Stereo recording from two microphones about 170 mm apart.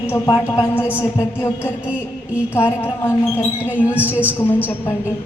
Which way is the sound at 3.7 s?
10° right (ahead or behind).